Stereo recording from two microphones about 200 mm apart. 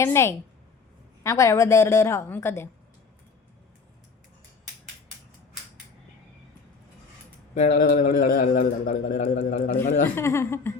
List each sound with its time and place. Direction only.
0.0 s a woman's voice: 15° left (ahead or behind)
7.5 s a man's voice: 40° left (ahead or behind)
10.2 s a woman's voice: 15° left (ahead or behind)